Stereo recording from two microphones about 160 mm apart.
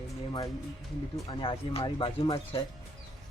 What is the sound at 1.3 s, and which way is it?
Speech, 35° left (ahead or behind).